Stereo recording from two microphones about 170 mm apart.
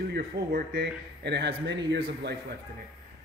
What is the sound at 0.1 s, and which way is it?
A man's voice, 65° right (ahead or behind).